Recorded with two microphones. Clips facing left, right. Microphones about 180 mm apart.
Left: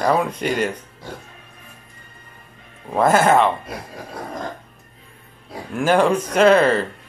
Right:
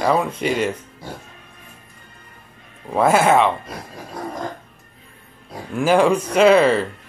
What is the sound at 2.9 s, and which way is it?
Speech, 5° right (ahead or behind).